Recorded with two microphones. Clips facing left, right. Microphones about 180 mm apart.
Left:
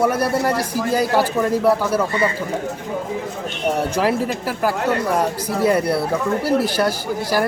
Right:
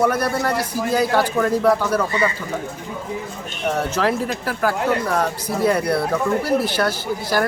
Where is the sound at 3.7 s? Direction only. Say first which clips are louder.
Left 1 dB; 10° left (ahead or behind).